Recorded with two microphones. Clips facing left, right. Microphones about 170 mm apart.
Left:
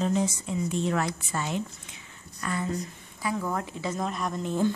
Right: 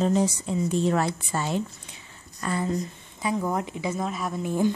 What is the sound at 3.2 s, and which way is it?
Speech, 20° right (ahead or behind).